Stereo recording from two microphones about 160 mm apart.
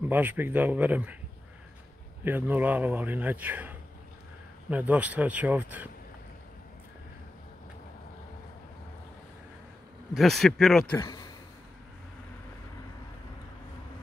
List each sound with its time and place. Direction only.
0.0 s a man's voice: 10° right (ahead or behind)
2.2 s a man's voice: 10° right (ahead or behind)
10.1 s speech: centre (ahead or behind)
11.0 s speech: 25° left (ahead or behind)